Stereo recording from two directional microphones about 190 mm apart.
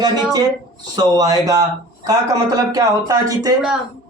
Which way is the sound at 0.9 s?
20° right (ahead or behind).